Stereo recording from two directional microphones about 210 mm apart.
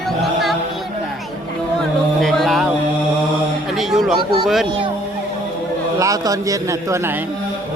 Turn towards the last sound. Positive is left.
turn(degrees=-15)  # may be behind; listen again after turning